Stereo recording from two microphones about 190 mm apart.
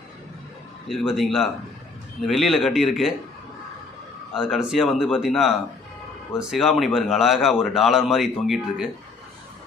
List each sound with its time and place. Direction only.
0.8 s speech: centre (ahead or behind)
4.3 s speech: centre (ahead or behind)